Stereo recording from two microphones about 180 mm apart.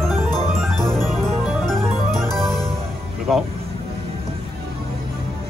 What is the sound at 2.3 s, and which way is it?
Music, centre (ahead or behind).